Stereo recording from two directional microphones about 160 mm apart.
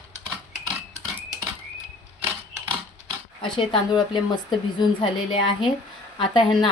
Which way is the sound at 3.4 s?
30° left (ahead or behind).